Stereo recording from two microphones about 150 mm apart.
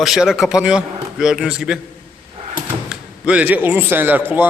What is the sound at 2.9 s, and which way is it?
Speech, 5° right (ahead or behind).